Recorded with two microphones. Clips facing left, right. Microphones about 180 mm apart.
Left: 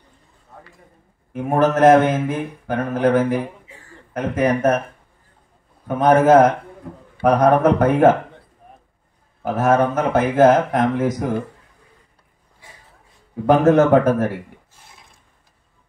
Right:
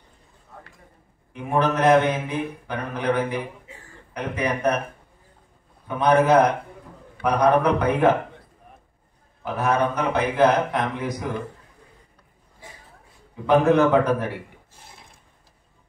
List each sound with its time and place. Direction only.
1.3 s mantra: 45° left (ahead or behind)
5.9 s mantra: 45° left (ahead or behind)
6.8 s a man's voice: 60° left (ahead or behind)
7.2 s mantra: 45° left (ahead or behind)
9.4 s mantra: 45° left (ahead or behind)
13.5 s mantra: 45° left (ahead or behind)